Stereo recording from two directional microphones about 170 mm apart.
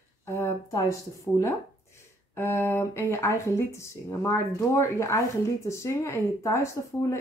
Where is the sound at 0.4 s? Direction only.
20° left (ahead or behind).